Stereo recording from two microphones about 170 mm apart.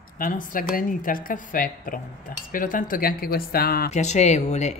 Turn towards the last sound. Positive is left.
turn(degrees=40)  # may be behind; listen again after turning